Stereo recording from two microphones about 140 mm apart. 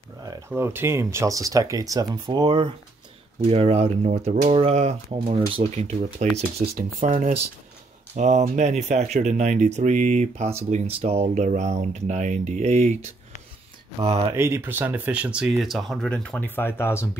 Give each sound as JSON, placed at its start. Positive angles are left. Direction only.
{"t": 0.5, "sound": "speech", "side_deg": -15}
{"t": 6.2, "sound": "speech", "side_deg": -55}
{"t": 6.7, "sound": "speech", "side_deg": -80}
{"t": 8.2, "sound": "speech", "side_deg": -60}
{"t": 14.0, "sound": "speech", "side_deg": -40}
{"t": 14.3, "sound": "speech", "side_deg": -15}